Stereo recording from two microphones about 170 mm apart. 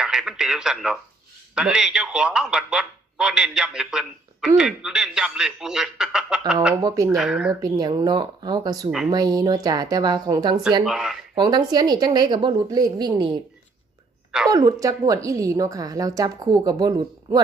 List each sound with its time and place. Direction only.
0.0 s speech: 5° right (ahead or behind)
6.8 s a woman's voice: 20° right (ahead or behind)
7.2 s speech: 5° right (ahead or behind)
7.6 s a woman's voice: 25° right (ahead or behind)
10.8 s speech: centre (ahead or behind)
11.3 s a woman's voice: 25° right (ahead or behind)
14.5 s a woman's voice: 20° right (ahead or behind)